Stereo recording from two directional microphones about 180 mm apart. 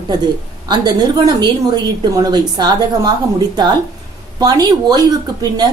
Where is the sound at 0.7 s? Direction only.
20° right (ahead or behind).